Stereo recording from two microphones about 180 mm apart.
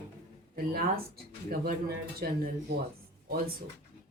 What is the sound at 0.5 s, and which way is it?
A woman's voice, 55° right (ahead or behind).